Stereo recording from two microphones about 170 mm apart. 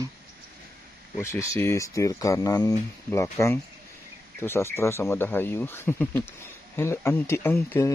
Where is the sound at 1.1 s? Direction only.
15° left (ahead or behind).